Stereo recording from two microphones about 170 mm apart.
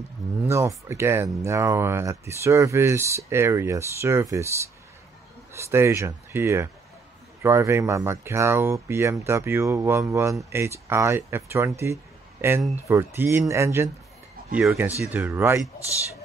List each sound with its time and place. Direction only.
0.5 s speech: 15° right (ahead or behind)
14.5 s speech: 5° right (ahead or behind)